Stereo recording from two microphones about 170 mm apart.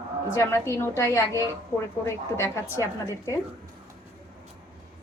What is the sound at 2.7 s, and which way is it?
Speech, 15° left (ahead or behind).